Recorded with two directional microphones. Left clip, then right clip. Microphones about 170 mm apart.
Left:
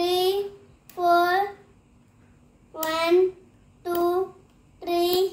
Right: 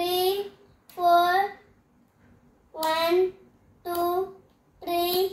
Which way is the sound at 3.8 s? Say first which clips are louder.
Left 2 dB; 10° left (ahead or behind).